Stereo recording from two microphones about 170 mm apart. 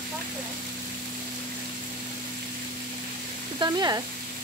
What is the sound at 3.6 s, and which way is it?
Speech, 25° right (ahead or behind).